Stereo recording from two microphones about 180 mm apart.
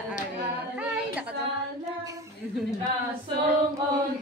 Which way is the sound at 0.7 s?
5° right (ahead or behind).